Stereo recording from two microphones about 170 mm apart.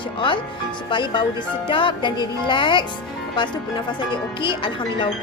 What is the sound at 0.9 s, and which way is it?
Speech, 25° left (ahead or behind).